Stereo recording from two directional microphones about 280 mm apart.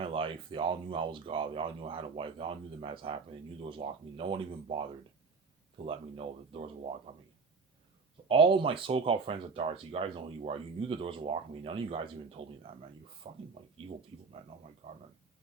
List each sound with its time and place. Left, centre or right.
0.0 s speech: centre
8.3 s speech: centre